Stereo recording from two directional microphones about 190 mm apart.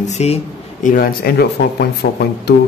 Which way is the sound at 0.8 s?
50° left (ahead or behind).